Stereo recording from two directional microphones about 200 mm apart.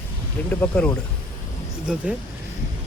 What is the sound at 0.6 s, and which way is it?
Speech, 10° left (ahead or behind).